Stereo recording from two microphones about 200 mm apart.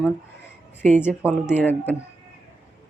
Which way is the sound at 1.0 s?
10° left (ahead or behind).